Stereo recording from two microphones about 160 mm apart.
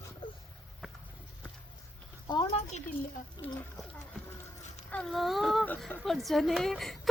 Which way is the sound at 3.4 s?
25° left (ahead or behind).